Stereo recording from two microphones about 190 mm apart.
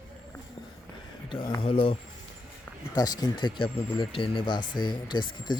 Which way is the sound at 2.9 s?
20° left (ahead or behind).